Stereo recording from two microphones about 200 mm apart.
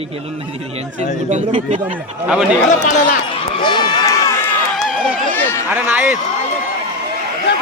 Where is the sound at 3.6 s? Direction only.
20° left (ahead or behind).